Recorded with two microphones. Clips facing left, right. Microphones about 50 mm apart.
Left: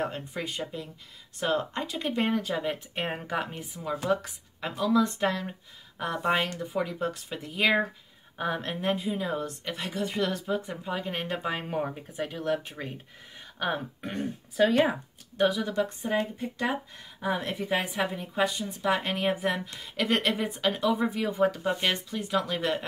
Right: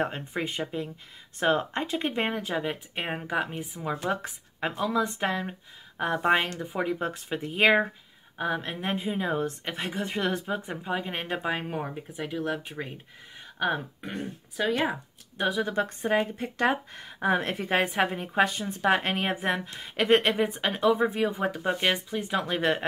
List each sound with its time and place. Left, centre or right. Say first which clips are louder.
0.0 s speech: right 2 dB; right; by 3.6 s centre
3.9 s speech: left 2 dB; right
8.4 s speech: right 1 dB; centre
8.8 s speech: left 1 dB; right
11.4 s speech: even; centre
15.5 s speech: right 1 dB; right
16.0 s speech: right 3 dB; right
21.3 s speech: left 2 dB; centre
22.4 s speech: right 3 dB; right